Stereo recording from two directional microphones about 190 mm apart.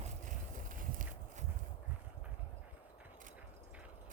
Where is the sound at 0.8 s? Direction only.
45° right (ahead or behind).